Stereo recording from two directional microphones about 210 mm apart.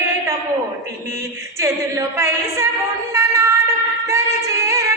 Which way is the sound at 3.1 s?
15° right (ahead or behind).